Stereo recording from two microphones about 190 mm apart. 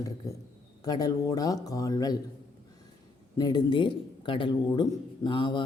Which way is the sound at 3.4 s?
20° left (ahead or behind).